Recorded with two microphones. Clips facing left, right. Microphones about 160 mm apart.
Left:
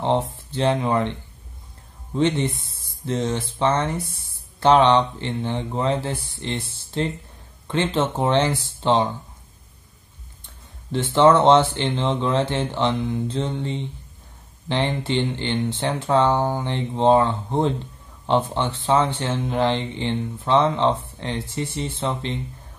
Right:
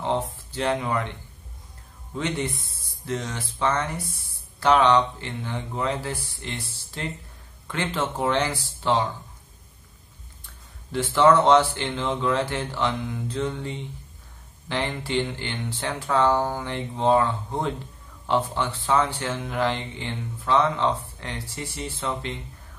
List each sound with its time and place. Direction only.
0.0 s speech: 25° left (ahead or behind)
2.1 s speech: 25° left (ahead or behind)
10.4 s a sound: 25° left (ahead or behind)
11.7 s speech: 25° left (ahead or behind)